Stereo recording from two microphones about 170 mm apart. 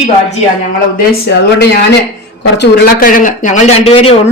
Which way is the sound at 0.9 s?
70° left (ahead or behind).